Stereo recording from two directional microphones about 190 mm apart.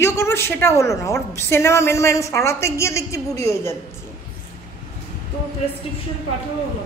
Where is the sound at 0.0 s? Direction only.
15° left (ahead or behind).